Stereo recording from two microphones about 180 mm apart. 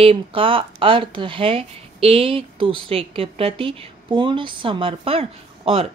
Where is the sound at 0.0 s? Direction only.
30° right (ahead or behind).